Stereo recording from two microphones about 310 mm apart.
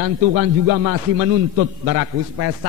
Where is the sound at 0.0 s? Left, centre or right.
Right.